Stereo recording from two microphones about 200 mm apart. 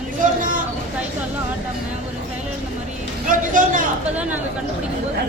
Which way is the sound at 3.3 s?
40° right (ahead or behind).